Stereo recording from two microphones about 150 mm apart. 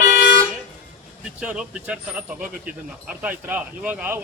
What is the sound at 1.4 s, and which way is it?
Speech, 5° right (ahead or behind).